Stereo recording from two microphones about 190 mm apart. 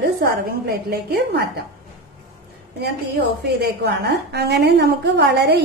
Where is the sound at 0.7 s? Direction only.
55° right (ahead or behind).